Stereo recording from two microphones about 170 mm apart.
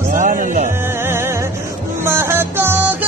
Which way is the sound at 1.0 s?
15° right (ahead or behind).